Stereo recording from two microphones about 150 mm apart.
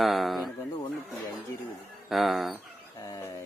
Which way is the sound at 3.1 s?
20° left (ahead or behind).